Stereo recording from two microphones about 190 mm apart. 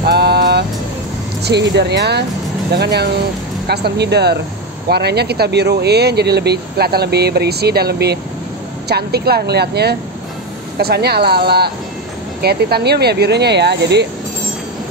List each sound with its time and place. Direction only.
0.0 s vehicle: 60° right (ahead or behind)
1.4 s speech: 60° right (ahead or behind)